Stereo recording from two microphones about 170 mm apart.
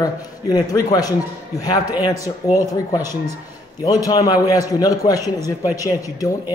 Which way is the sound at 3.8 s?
20° left (ahead or behind).